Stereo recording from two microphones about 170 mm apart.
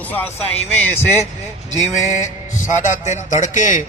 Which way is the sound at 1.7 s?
45° left (ahead or behind).